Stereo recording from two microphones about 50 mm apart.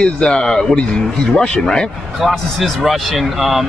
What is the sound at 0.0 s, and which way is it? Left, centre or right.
Speech, centre.